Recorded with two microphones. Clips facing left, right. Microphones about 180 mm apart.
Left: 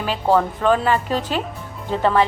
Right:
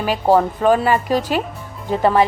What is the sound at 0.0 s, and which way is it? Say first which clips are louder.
A woman's voice: right 3 dB; 10° right (ahead or behind).